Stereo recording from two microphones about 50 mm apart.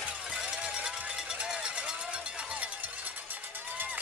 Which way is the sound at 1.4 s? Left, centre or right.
Centre.